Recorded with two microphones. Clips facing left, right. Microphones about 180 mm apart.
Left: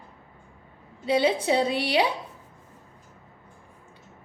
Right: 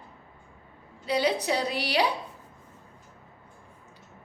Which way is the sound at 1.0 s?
25° left (ahead or behind).